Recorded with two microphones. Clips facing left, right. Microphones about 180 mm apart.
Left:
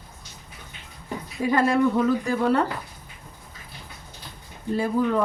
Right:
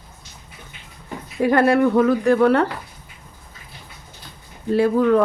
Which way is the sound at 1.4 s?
65° right (ahead or behind).